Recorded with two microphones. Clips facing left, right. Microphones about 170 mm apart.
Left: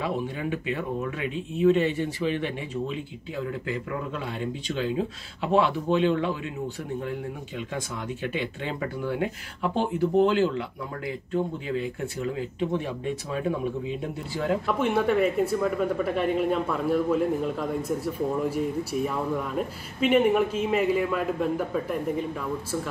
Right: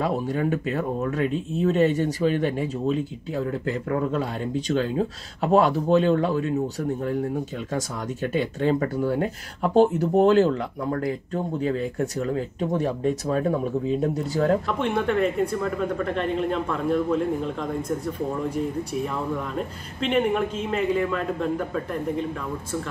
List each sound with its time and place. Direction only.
0.0 s speech: 45° right (ahead or behind)
14.7 s speech: 5° left (ahead or behind)